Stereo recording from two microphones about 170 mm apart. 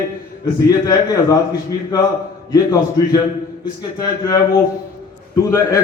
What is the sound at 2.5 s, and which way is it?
Speech, 20° left (ahead or behind).